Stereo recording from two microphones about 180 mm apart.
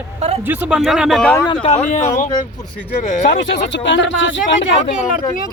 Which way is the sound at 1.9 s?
40° left (ahead or behind).